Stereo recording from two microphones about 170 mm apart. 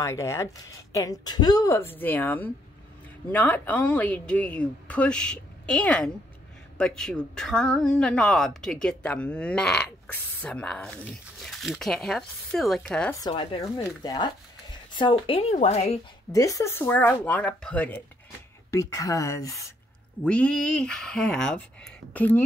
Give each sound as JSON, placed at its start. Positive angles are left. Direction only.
{"t": 0.0, "sound": "speech", "side_deg": 15}
{"t": 13.4, "sound": "a woman's voice", "side_deg": 30}
{"t": 16.3, "sound": "speech", "side_deg": 20}
{"t": 20.2, "sound": "speech", "side_deg": 5}